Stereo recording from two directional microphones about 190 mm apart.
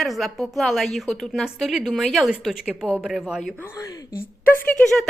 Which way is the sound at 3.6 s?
15° left (ahead or behind).